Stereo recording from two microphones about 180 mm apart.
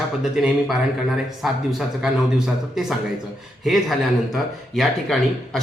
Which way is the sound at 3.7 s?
Centre (ahead or behind).